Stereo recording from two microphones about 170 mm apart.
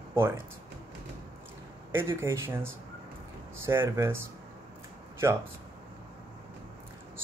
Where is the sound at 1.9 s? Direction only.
15° right (ahead or behind).